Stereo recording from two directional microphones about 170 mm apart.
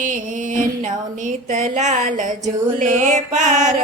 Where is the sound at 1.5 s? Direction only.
45° right (ahead or behind).